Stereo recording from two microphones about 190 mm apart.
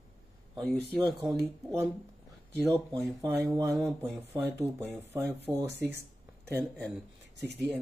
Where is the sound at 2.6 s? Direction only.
15° right (ahead or behind).